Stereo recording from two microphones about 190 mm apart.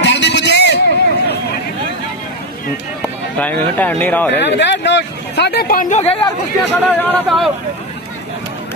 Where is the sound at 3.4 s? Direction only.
10° left (ahead or behind).